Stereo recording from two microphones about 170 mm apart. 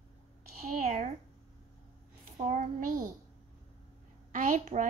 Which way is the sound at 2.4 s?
45° right (ahead or behind).